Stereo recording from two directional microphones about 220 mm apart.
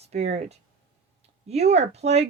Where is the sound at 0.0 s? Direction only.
30° right (ahead or behind).